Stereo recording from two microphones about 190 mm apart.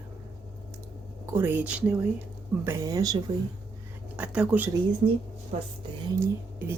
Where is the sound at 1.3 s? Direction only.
10° right (ahead or behind).